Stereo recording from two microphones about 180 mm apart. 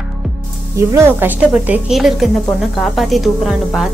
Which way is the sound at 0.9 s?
10° right (ahead or behind).